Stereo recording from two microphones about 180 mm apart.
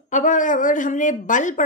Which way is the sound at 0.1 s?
45° left (ahead or behind).